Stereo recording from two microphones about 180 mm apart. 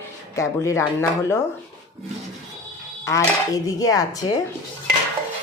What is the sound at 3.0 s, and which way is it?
Dishes, 20° left (ahead or behind).